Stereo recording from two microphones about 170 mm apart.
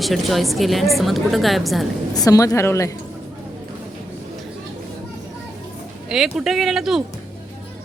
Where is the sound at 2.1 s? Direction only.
20° left (ahead or behind).